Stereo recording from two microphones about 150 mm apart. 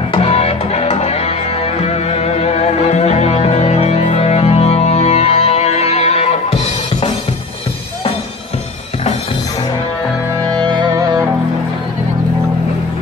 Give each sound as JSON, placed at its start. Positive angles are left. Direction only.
{"t": 0.1, "sound": "music", "side_deg": 40}
{"t": 10.6, "sound": "music", "side_deg": -30}